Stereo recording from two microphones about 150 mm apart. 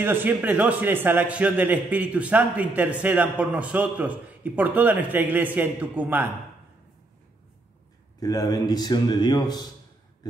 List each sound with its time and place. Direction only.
0.0 s a man's voice: 15° right (ahead or behind)
8.2 s speech: 25° left (ahead or behind)